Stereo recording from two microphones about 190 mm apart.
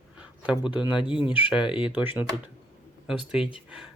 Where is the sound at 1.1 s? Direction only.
25° left (ahead or behind).